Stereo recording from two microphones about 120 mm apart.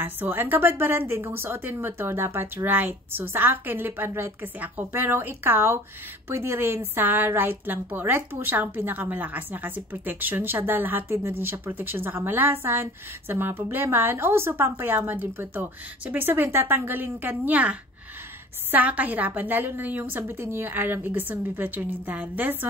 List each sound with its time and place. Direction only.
0.0 s a woman's voice: 15° right (ahead or behind)